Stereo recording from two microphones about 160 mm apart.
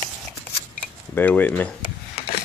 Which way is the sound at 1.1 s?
10° left (ahead or behind).